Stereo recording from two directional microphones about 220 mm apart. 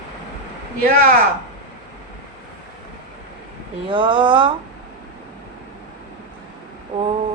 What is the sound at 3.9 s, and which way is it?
Speech, 20° right (ahead or behind).